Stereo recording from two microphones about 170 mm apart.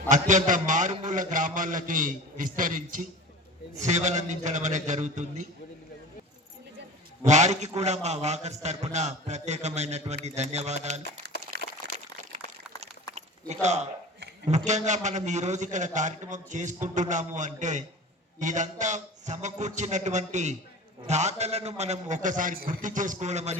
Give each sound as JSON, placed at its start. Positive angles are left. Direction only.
{"t": 0.1, "sound": "a man's voice", "side_deg": -45}
{"t": 7.3, "sound": "a man's voice", "side_deg": -45}
{"t": 11.5, "sound": "a sound", "side_deg": -65}
{"t": 13.5, "sound": "a man's voice", "side_deg": -40}